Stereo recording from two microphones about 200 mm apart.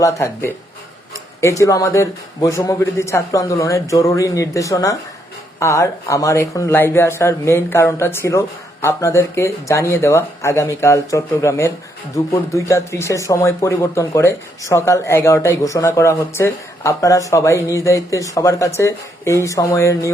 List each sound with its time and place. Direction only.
0.0 s speech: 15° left (ahead or behind)